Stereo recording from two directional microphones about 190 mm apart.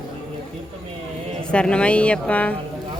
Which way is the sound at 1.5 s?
5° left (ahead or behind).